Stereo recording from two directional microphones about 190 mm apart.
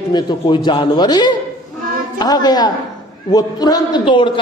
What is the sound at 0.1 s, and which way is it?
A man's voice, 25° left (ahead or behind).